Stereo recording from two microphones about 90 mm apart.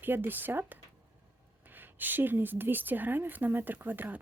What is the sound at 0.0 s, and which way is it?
A woman's voice, 20° right (ahead or behind).